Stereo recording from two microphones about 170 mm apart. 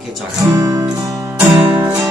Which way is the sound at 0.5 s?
15° right (ahead or behind).